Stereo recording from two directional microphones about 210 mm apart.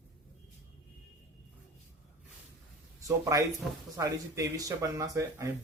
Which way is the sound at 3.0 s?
15° right (ahead or behind).